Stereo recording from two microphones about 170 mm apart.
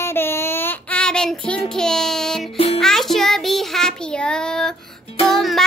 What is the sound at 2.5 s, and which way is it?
Music, 35° left (ahead or behind).